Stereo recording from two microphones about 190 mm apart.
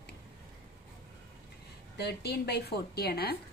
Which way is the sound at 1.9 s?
60° left (ahead or behind).